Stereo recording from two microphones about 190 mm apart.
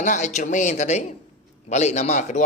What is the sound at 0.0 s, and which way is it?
A woman's voice, 40° left (ahead or behind).